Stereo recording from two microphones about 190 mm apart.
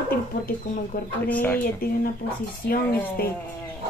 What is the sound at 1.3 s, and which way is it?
Speech, 10° left (ahead or behind).